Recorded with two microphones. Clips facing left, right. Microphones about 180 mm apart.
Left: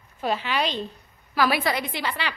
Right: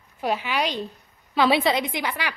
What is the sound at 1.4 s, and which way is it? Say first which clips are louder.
Speech: right 3 dB; 25° right (ahead or behind).